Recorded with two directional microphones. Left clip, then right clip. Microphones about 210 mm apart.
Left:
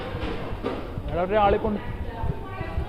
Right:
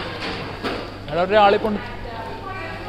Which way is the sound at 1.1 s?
25° right (ahead or behind).